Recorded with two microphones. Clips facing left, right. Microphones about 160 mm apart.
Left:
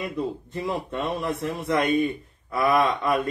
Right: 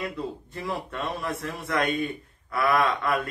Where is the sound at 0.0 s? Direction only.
20° left (ahead or behind).